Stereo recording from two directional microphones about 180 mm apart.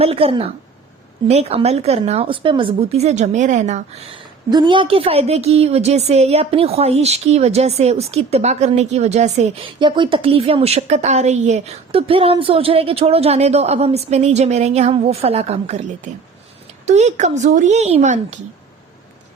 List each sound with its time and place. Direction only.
0.0 s speech: 30° right (ahead or behind)
9.8 s speech: 25° right (ahead or behind)